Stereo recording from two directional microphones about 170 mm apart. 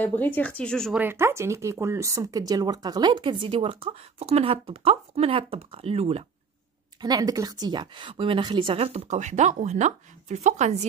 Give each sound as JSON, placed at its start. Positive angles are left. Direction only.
{"t": 0.0, "sound": "speech", "side_deg": 10}
{"t": 0.9, "sound": "speech", "side_deg": -15}
{"t": 7.0, "sound": "a woman's voice", "side_deg": -25}